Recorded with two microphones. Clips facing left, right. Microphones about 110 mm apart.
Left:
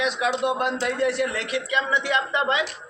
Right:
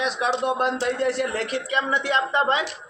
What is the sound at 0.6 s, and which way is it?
A man's voice, 35° right (ahead or behind).